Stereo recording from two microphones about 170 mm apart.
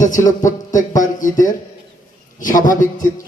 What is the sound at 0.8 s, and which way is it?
A man's voice, 50° left (ahead or behind).